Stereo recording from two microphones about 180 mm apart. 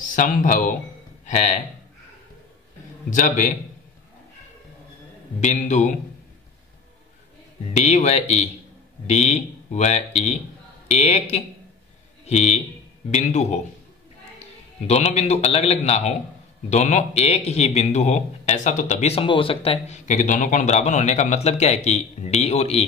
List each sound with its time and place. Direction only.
0.0 s speech: 45° left (ahead or behind)
3.1 s a man's voice: 45° left (ahead or behind)
5.4 s speech: 40° left (ahead or behind)
7.7 s a man's voice: 40° left (ahead or behind)